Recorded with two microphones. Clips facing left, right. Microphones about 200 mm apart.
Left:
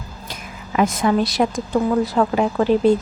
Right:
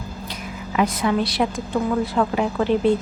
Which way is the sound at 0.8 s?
45° left (ahead or behind).